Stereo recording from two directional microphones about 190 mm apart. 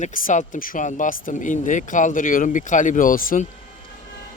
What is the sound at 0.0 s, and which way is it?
Speech, 45° left (ahead or behind).